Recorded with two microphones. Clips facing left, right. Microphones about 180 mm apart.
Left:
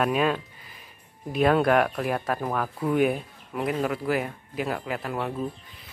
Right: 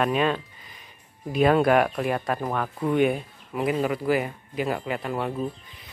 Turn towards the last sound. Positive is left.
turn(degrees=0)  # may be behind; listen again after turning